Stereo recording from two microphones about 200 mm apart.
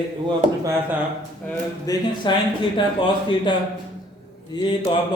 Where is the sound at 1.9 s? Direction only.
20° left (ahead or behind).